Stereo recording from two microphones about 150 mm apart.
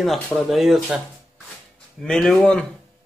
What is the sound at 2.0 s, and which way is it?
Speech, 5° left (ahead or behind).